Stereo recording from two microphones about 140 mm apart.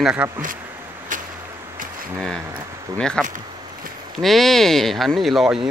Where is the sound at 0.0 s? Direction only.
10° right (ahead or behind).